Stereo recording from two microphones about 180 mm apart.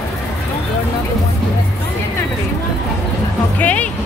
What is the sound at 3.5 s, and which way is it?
Speech, 10° left (ahead or behind).